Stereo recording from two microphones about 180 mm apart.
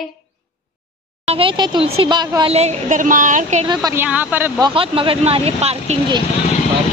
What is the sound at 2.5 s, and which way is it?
A woman's voice, 35° right (ahead or behind).